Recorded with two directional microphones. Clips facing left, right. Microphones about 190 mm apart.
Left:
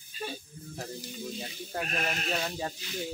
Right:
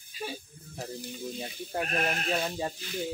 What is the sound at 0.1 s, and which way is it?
Snake, 10° right (ahead or behind).